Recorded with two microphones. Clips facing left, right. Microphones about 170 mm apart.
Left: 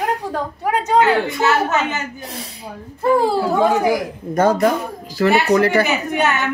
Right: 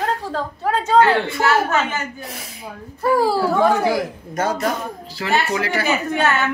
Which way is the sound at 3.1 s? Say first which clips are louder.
Left 1 dB; 20° left (ahead or behind).